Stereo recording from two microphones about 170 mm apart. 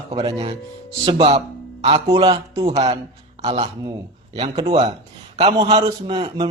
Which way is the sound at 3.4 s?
30° right (ahead or behind).